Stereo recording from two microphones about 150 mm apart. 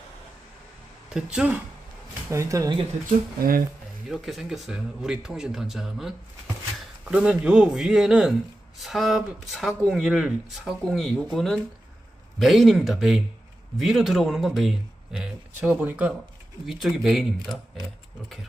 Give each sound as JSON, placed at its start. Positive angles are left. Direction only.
{"t": 1.1, "sound": "speech", "side_deg": -5}
{"t": 2.3, "sound": "speech", "side_deg": -20}
{"t": 3.1, "sound": "speech", "side_deg": -70}
{"t": 4.1, "sound": "speech", "side_deg": 0}